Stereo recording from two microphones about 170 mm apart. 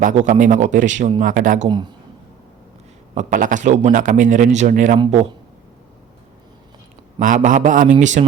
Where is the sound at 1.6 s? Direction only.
25° right (ahead or behind).